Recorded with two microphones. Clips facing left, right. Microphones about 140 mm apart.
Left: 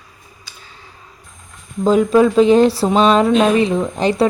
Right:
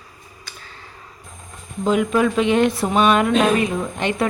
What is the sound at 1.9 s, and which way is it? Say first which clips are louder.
Speech: left 6 dB; 35° left (ahead or behind).